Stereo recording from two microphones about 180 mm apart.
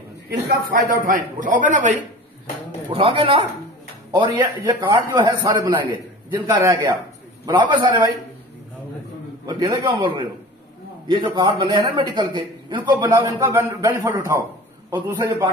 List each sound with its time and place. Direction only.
0.5 s a man's voice: 50° right (ahead or behind)
2.9 s a man's voice: 30° right (ahead or behind)
9.5 s a man's voice: 25° right (ahead or behind)